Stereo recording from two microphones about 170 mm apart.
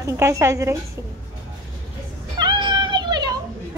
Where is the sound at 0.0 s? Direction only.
15° right (ahead or behind).